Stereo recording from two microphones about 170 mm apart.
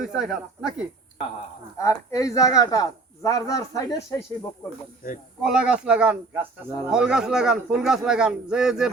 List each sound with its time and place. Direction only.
0.0 s speech: 5° right (ahead or behind)
1.8 s speech: 15° left (ahead or behind)
5.4 s speech: 5° right (ahead or behind)